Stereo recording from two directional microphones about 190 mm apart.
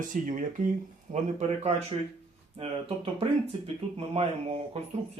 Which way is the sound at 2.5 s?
30° right (ahead or behind).